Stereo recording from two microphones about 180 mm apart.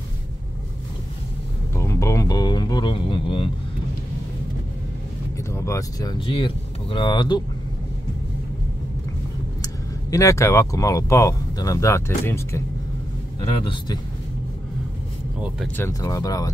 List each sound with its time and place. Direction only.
1.8 s a sound: 15° left (ahead or behind)
5.5 s speech: 15° left (ahead or behind)
10.1 s speech: 15° left (ahead or behind)
13.4 s speech: 30° left (ahead or behind)
15.8 s speech: 20° left (ahead or behind)